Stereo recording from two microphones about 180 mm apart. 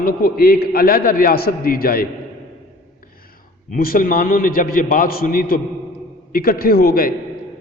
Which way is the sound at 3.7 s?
50° left (ahead or behind).